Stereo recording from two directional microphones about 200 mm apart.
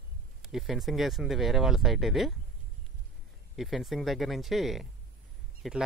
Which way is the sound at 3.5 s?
Centre (ahead or behind).